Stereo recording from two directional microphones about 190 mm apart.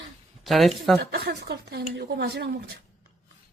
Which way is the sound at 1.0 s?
55° right (ahead or behind).